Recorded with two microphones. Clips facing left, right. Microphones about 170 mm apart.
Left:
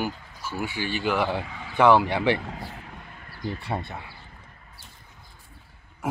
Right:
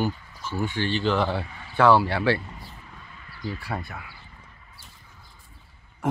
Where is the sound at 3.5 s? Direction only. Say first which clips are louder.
Left 2 dB; 25° left (ahead or behind).